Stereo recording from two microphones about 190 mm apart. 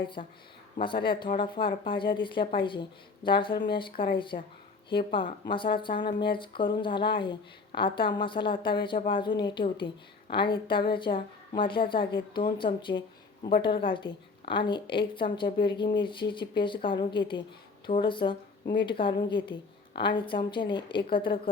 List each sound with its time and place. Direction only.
0.0 s speech: 25° left (ahead or behind)